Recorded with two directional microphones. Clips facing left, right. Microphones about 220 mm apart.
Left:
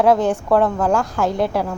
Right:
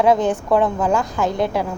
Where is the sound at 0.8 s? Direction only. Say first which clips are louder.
Left 1 dB; 10° left (ahead or behind).